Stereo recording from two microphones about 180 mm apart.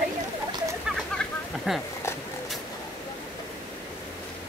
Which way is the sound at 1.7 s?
5° right (ahead or behind).